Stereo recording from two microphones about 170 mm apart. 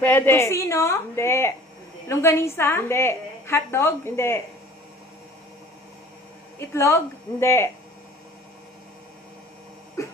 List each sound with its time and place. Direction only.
0.0 s a woman's voice: 10° left (ahead or behind)
6.7 s a woman's voice: 15° left (ahead or behind)
10.0 s cough: 20° left (ahead or behind)